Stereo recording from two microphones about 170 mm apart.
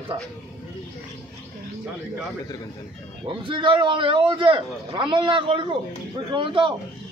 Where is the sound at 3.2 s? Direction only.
30° right (ahead or behind).